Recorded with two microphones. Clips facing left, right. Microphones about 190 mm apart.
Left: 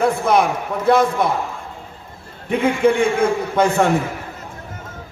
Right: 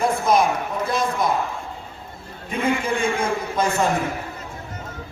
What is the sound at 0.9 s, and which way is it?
Speech, 65° left (ahead or behind).